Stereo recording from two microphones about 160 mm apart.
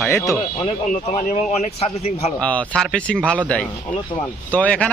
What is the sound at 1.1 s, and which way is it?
A man's voice, 45° left (ahead or behind).